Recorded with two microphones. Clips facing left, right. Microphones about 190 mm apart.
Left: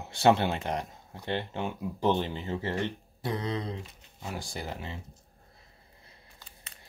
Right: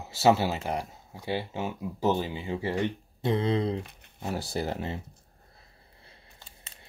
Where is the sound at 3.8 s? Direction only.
60° right (ahead or behind).